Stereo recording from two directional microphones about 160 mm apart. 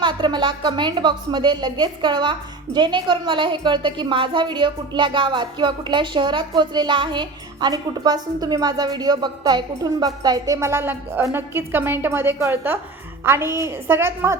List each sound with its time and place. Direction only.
0.0 s a woman's voice: 30° right (ahead or behind)